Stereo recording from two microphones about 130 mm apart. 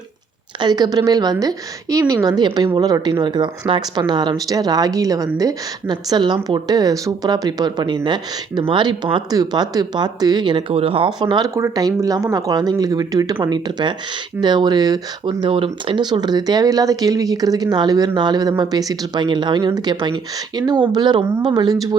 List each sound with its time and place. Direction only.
0.6 s a woman's voice: 30° right (ahead or behind)
15.4 s speech: 40° right (ahead or behind)